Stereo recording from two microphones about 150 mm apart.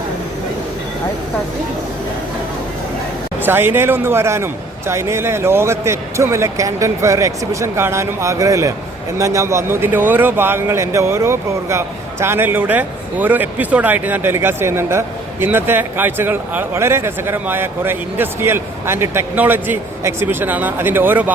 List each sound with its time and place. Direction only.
3.4 s a man's voice: 15° right (ahead or behind)